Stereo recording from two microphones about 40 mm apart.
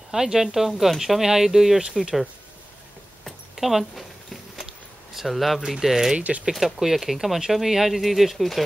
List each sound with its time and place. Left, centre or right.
0.1 s speech: centre
3.3 s a sound: centre
5.1 s speech: centre
6.1 s speech: right
6.5 s speech: centre